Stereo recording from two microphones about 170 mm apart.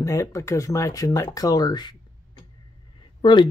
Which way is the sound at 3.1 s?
30° left (ahead or behind).